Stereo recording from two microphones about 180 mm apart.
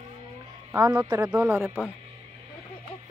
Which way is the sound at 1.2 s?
10° right (ahead or behind).